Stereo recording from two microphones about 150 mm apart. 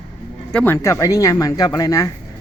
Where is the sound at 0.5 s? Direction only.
15° left (ahead or behind).